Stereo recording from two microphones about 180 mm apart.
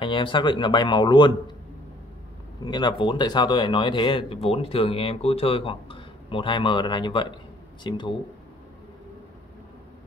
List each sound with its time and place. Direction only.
0.0 s speech: 25° left (ahead or behind)
2.6 s speech: 25° left (ahead or behind)